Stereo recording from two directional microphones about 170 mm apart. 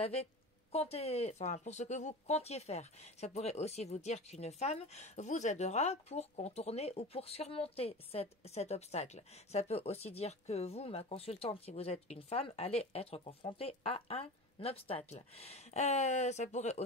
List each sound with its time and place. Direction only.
0.7 s speech: 35° left (ahead or behind)